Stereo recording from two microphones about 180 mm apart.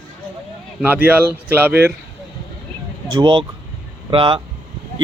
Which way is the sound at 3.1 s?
25° right (ahead or behind).